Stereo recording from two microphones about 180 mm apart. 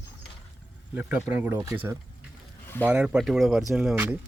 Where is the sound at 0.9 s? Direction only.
10° right (ahead or behind).